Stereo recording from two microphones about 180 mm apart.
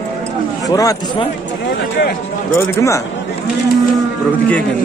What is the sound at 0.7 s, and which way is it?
Speech, 20° left (ahead or behind).